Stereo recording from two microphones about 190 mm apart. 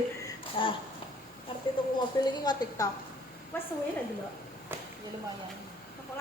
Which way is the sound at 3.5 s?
10° left (ahead or behind).